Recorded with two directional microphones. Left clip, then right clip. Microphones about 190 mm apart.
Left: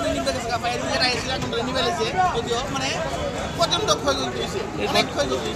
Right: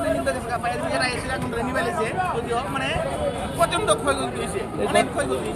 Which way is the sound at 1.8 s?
30° right (ahead or behind).